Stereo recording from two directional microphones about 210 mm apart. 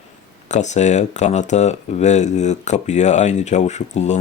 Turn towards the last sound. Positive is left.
turn(degrees=35)  # may be behind; listen again after turning